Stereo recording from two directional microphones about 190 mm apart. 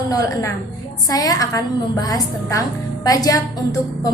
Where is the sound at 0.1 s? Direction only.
15° left (ahead or behind).